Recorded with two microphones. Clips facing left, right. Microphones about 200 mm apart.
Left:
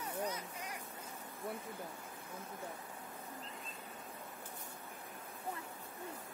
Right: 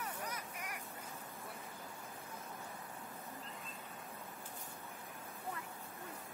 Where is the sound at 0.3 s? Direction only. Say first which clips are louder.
Left 2 dB; 25° left (ahead or behind).